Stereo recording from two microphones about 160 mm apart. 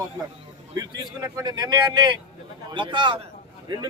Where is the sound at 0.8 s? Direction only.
20° right (ahead or behind).